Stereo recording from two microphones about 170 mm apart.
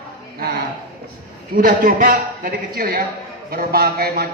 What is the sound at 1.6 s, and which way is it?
A man's voice, 55° right (ahead or behind).